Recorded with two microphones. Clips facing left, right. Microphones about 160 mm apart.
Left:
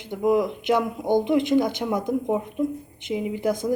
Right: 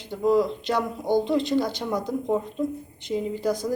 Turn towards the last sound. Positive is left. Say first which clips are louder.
# left 1 dB
turn(degrees=15)  # may be behind; listen again after turning